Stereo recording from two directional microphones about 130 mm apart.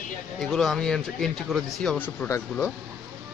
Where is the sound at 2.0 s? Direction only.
15° left (ahead or behind).